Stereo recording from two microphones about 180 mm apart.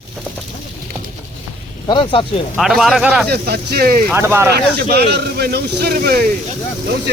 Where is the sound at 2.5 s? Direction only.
Centre (ahead or behind).